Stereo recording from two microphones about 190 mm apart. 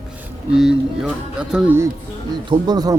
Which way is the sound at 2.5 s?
20° right (ahead or behind).